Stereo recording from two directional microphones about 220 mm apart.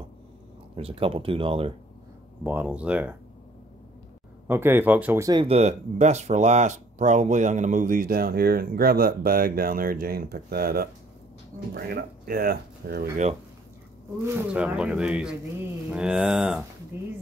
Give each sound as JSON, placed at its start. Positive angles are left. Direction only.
{"t": 0.7, "sound": "speech", "side_deg": -25}
{"t": 2.4, "sound": "speech", "side_deg": -5}
{"t": 4.5, "sound": "speech", "side_deg": -10}
{"t": 14.2, "sound": "speech", "side_deg": -10}